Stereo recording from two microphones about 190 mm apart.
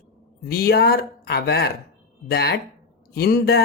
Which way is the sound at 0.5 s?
55° left (ahead or behind).